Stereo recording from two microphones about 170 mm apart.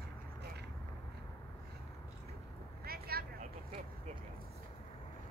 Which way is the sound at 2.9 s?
65° right (ahead or behind).